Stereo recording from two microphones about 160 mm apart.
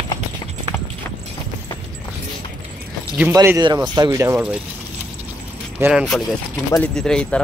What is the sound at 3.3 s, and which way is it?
Speech, 15° right (ahead or behind).